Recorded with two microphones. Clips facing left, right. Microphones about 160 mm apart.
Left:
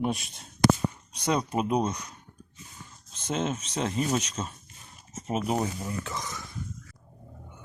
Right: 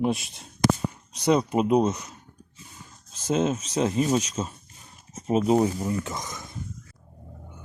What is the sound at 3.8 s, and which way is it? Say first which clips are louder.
Speech: right 5 dB; 30° right (ahead or behind).